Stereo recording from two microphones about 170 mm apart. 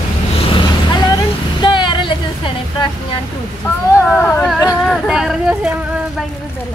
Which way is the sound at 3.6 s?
15° left (ahead or behind).